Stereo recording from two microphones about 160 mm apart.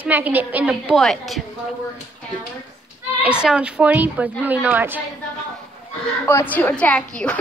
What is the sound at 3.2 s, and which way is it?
A woman's voice, 5° right (ahead or behind).